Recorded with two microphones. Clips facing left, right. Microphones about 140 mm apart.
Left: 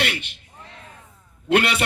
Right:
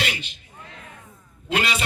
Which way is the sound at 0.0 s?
60° left (ahead or behind).